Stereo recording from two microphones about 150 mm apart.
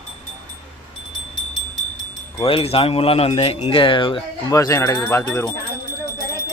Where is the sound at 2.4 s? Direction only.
40° left (ahead or behind).